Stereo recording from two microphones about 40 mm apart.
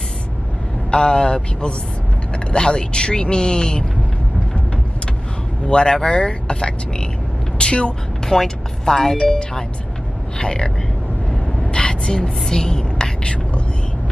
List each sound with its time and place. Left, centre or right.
0.9 s speech: left
5.7 s speech: centre
7.5 s vehicle: left
8.3 s speech: centre
10.4 s speech: centre
11.7 s a sound: left